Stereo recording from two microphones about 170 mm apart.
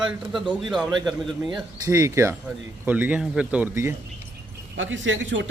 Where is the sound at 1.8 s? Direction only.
15° right (ahead or behind).